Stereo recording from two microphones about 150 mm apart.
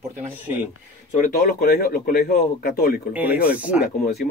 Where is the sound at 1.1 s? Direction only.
65° left (ahead or behind); by 3.0 s 90° left.